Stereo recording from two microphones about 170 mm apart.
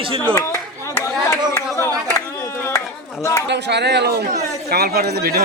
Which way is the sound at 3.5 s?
85° right.